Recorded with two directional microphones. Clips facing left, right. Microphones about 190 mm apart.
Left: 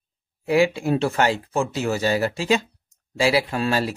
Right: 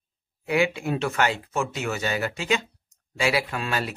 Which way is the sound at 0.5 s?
30° left (ahead or behind).